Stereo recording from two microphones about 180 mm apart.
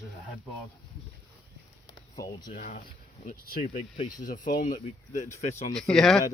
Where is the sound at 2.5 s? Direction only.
50° left (ahead or behind).